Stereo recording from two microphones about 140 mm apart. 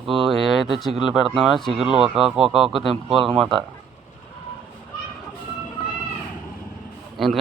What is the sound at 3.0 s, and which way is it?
Speech, 40° right (ahead or behind).